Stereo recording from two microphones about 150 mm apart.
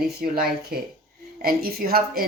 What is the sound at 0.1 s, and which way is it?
Speech, 90° right.